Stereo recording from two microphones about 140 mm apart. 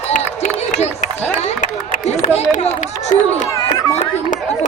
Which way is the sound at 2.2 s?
60° left (ahead or behind).